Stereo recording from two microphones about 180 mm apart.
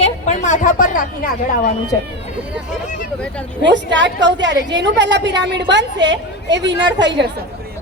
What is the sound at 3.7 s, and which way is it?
A woman's voice, 80° right.